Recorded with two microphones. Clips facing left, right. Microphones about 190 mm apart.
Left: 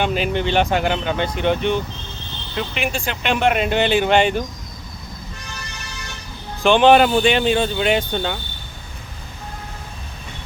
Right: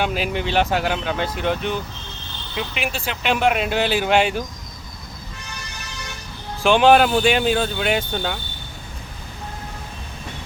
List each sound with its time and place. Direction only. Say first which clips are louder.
0.0 s speech: left 3 dB; 5° right (ahead or behind)
6.6 s speech: left 1 dB; 5° right (ahead or behind)